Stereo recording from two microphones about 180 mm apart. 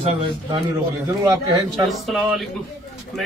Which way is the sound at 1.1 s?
20° right (ahead or behind).